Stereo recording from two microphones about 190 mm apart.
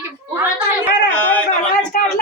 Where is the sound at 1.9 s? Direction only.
50° left (ahead or behind).